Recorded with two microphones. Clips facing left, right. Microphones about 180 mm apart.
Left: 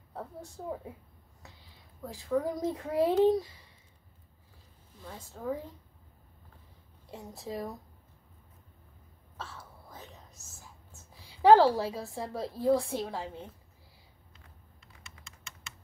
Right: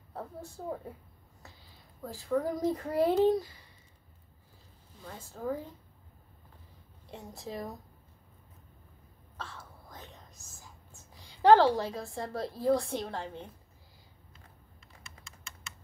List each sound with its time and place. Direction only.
2.0 s a woman's voice: centre (ahead or behind)
5.0 s a woman's voice: centre (ahead or behind)
7.1 s a woman's voice: centre (ahead or behind)
9.4 s whispering: 5° left (ahead or behind)
11.2 s a woman's voice: 5° left (ahead or behind)